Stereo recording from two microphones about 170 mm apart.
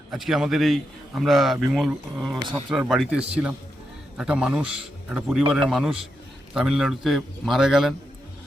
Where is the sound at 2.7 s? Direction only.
Centre (ahead or behind).